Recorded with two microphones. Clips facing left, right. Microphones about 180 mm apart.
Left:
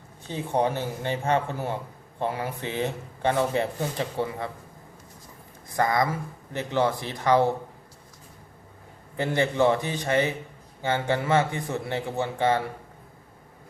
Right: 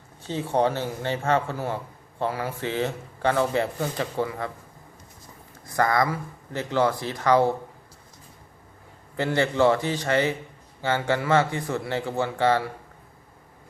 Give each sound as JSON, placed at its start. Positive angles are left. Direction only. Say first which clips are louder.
{"t": 0.3, "sound": "speech", "louder": "right 2 dB", "side_deg": 15}
{"t": 5.6, "sound": "speech", "louder": "right 1 dB", "side_deg": 20}
{"t": 9.1, "sound": "speech", "louder": "right 1 dB", "side_deg": 15}